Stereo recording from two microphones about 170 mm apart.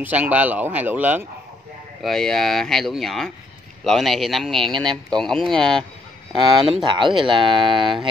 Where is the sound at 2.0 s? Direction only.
Centre (ahead or behind).